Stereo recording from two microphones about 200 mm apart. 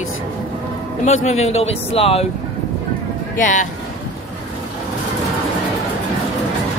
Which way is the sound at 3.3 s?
40° left (ahead or behind).